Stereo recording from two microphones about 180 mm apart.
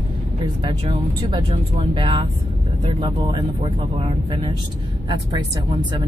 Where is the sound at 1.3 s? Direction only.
30° right (ahead or behind).